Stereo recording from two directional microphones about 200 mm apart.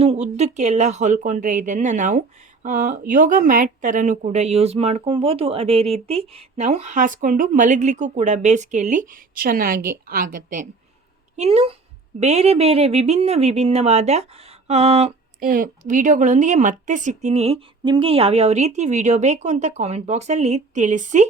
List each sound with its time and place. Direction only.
0.0 s speech: 30° right (ahead or behind)
11.3 s speech: 30° right (ahead or behind)